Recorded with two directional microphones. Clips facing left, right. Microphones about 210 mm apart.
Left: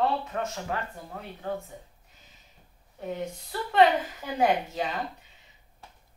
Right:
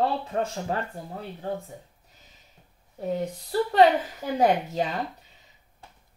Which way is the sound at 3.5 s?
40° right (ahead or behind).